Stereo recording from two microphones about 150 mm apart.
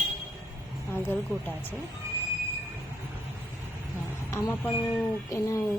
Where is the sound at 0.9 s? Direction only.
15° left (ahead or behind).